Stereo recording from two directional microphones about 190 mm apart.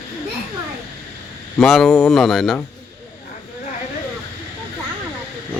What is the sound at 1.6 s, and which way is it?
Speech, centre (ahead or behind).